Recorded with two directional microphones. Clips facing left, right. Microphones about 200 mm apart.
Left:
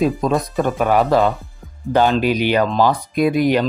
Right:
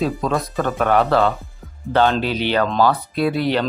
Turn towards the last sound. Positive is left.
turn(degrees=15)  # may be behind; listen again after turning